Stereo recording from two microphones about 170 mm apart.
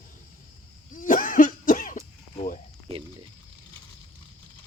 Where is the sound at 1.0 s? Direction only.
50° left (ahead or behind).